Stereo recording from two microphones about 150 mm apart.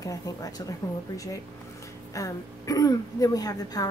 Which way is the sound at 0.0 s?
25° left (ahead or behind).